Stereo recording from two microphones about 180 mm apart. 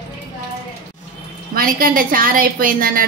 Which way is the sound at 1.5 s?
50° right (ahead or behind).